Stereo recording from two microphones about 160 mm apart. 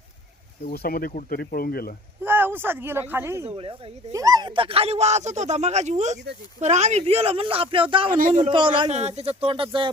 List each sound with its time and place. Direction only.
0.6 s speech: 70° left (ahead or behind)
2.2 s speech: 10° right (ahead or behind)
3.5 s speech: 35° right (ahead or behind)
4.1 s speech: 20° right (ahead or behind)
8.2 s speech: 45° right (ahead or behind)
8.4 s speech: 30° right (ahead or behind)
8.9 s speech: 45° right (ahead or behind)